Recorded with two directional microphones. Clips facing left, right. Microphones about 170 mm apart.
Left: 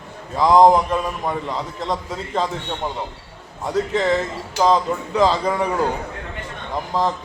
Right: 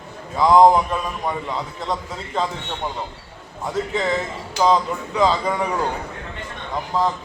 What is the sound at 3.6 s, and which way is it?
A man's voice, centre (ahead or behind).